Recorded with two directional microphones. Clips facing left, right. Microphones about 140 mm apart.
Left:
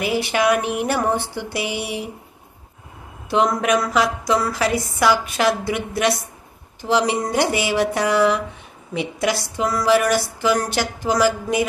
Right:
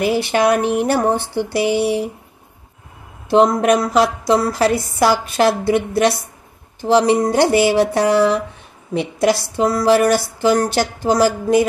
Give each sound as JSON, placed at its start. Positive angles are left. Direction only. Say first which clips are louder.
{"t": 0.0, "sound": "speech", "louder": "right 4 dB", "side_deg": -35}
{"t": 3.3, "sound": "speech", "louder": "right 6 dB", "side_deg": -35}